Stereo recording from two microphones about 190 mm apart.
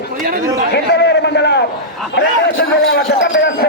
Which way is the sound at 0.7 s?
60° left (ahead or behind).